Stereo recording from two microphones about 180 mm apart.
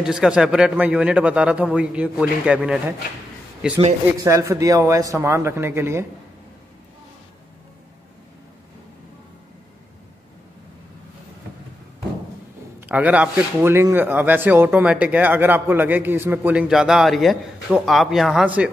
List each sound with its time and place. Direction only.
0.0 s a man's voice: 5° right (ahead or behind)
4.2 s a man's voice: 15° right (ahead or behind)
12.8 s a man's voice: 10° right (ahead or behind)